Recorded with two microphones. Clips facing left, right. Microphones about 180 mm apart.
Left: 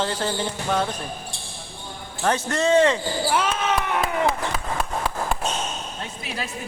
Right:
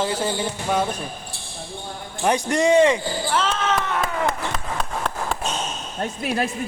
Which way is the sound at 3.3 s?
10° left (ahead or behind).